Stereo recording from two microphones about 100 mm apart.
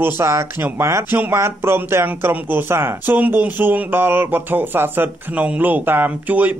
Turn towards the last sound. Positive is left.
turn(degrees=-15)  # may be behind; listen again after turning